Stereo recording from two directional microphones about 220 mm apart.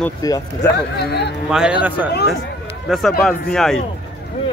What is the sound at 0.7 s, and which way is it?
Speech, 50° left (ahead or behind).